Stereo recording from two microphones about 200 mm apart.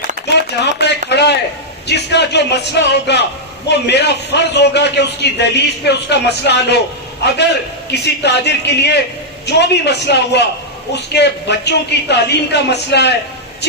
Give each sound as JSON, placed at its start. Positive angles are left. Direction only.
{"t": 0.3, "sound": "a sound", "side_deg": 60}
{"t": 1.9, "sound": "a man's voice", "side_deg": 55}
{"t": 7.9, "sound": "a man's voice", "side_deg": 55}